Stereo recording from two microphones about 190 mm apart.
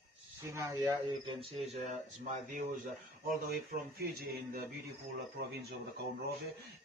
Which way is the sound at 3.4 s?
55° right (ahead or behind).